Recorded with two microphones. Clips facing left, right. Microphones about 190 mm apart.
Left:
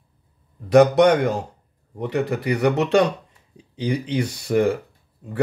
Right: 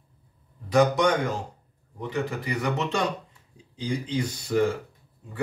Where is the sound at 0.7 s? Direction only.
65° left (ahead or behind).